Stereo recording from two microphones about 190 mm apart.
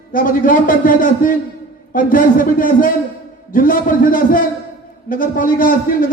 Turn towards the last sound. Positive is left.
turn(degrees=45)  # may be behind; listen again after turning